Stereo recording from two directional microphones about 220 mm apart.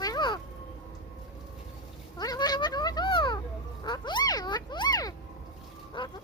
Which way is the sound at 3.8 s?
20° left (ahead or behind).